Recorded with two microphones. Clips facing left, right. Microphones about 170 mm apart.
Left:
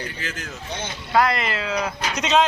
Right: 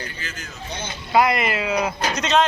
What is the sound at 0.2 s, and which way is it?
Speech, 75° left (ahead or behind).